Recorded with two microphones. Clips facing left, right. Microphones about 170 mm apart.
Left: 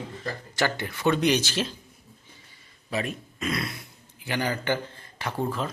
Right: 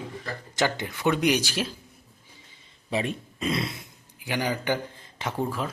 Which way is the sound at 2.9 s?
30° right (ahead or behind).